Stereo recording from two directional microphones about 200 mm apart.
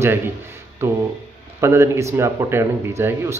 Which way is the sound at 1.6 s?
15° right (ahead or behind).